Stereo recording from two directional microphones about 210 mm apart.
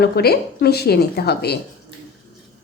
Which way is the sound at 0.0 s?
50° left (ahead or behind).